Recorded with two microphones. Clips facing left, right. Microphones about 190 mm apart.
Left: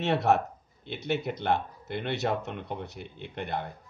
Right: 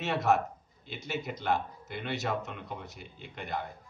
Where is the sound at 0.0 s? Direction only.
60° left (ahead or behind).